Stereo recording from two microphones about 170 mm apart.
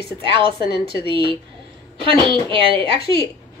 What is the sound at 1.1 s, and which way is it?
Speech, 30° right (ahead or behind).